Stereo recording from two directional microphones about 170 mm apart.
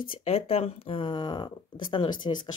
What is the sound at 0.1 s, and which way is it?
Speech, 35° left (ahead or behind).